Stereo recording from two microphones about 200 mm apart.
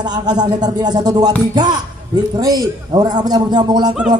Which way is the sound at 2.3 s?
20° right (ahead or behind).